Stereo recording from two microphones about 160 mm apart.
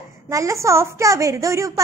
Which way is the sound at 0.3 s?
20° right (ahead or behind).